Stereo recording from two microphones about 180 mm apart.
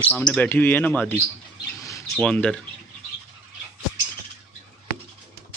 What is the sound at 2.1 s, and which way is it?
Speech, 5° left (ahead or behind).